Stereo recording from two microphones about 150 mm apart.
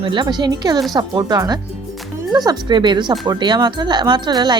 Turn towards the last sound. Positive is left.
turn(degrees=-30)  # may be behind; listen again after turning